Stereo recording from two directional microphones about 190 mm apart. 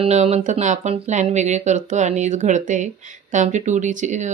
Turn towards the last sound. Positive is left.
turn(degrees=-40)  # may be behind; listen again after turning